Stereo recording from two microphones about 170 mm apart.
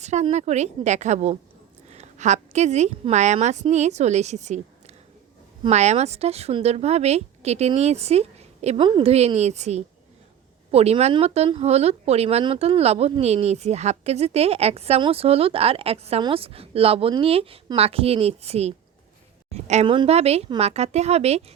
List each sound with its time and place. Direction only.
0.0 s a woman's voice: 40° right (ahead or behind)